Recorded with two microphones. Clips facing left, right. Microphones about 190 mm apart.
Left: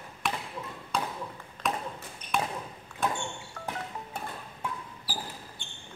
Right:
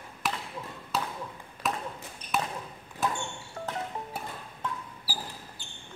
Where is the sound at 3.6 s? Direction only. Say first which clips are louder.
Right 3 dB; 30° right (ahead or behind).